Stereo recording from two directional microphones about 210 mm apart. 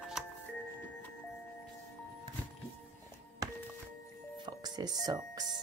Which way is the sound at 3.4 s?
15° right (ahead or behind).